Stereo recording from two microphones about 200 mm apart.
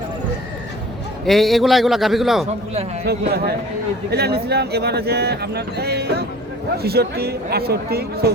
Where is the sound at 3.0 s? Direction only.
55° right (ahead or behind).